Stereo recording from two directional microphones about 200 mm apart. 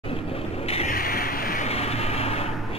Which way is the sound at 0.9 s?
45° left (ahead or behind).